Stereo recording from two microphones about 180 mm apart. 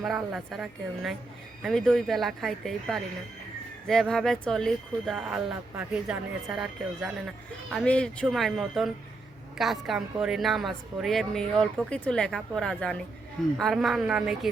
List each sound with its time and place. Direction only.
0.0 s a woman's voice: centre (ahead or behind)